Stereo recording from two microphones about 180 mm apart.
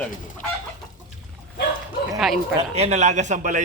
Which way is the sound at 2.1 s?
Centre (ahead or behind).